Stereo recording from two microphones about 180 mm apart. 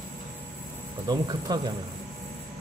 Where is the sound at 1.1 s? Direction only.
20° right (ahead or behind).